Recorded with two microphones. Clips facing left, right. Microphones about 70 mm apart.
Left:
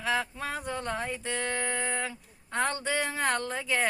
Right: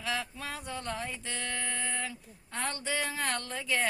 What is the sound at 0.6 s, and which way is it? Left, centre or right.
Speech, centre.